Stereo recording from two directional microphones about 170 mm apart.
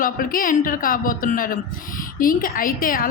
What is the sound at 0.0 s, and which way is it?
A woman's voice, 55° left (ahead or behind).